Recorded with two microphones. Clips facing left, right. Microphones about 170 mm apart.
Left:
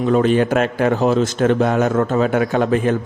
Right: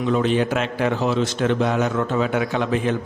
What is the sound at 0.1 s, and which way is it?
A man's voice, 50° left (ahead or behind).